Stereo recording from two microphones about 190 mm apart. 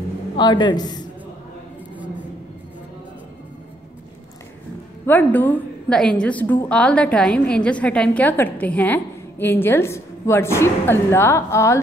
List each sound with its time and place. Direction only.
0.4 s a man's voice: 20° left (ahead or behind)
5.0 s a woman's voice: 10° left (ahead or behind)